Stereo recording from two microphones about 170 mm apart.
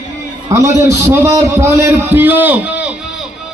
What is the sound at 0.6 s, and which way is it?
A man's voice, 15° right (ahead or behind).